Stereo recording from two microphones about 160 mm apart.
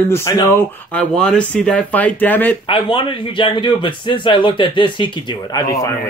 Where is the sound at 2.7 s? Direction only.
30° left (ahead or behind).